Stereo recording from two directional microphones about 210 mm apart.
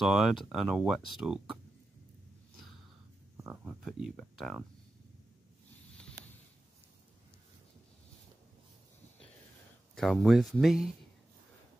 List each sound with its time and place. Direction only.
0.0 s speech: centre (ahead or behind)
2.5 s a sound: centre (ahead or behind)
3.4 s speech: centre (ahead or behind)
9.9 s speech: centre (ahead or behind)